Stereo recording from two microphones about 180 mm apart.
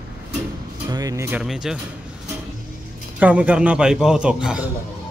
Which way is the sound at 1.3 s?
5° right (ahead or behind).